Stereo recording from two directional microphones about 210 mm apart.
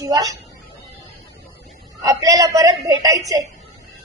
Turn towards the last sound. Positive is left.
turn(degrees=-15)  # may be behind; listen again after turning